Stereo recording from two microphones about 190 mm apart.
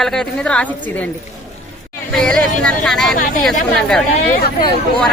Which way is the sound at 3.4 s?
Centre (ahead or behind).